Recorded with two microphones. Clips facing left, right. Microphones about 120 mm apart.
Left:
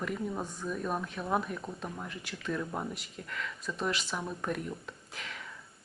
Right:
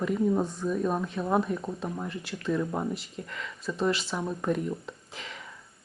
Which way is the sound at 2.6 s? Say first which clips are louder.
Right 6 dB; 15° right (ahead or behind).